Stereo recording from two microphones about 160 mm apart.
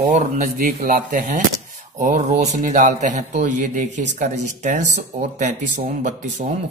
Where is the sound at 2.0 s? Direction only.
50° right (ahead or behind).